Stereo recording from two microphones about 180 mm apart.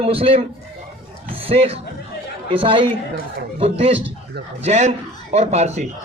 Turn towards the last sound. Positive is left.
turn(degrees=-40)  # may be behind; listen again after turning